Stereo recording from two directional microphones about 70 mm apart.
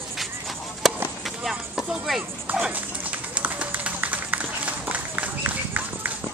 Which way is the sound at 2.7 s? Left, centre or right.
Right.